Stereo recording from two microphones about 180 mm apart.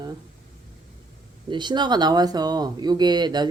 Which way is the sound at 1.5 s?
25° right (ahead or behind).